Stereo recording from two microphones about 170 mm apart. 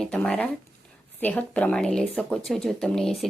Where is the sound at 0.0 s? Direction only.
5° left (ahead or behind).